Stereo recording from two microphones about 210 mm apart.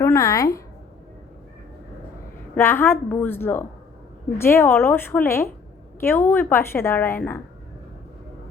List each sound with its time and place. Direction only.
0.0 s speech: 15° left (ahead or behind)
2.6 s a woman's voice: 10° left (ahead or behind)